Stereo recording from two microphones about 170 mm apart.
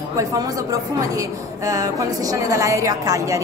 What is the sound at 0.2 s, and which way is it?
A woman's voice, 20° right (ahead or behind).